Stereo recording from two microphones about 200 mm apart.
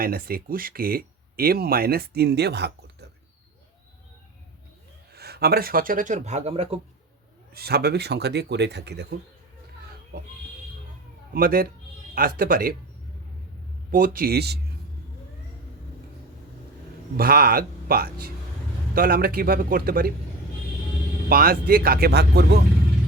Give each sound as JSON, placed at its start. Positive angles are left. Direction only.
{"t": 0.0, "sound": "speech", "side_deg": -50}
{"t": 5.1, "sound": "speech", "side_deg": -55}
{"t": 7.5, "sound": "speech", "side_deg": -50}
{"t": 11.3, "sound": "speech", "side_deg": -45}
{"t": 13.9, "sound": "speech", "side_deg": -45}
{"t": 17.2, "sound": "speech", "side_deg": -50}
{"t": 21.2, "sound": "speech", "side_deg": -45}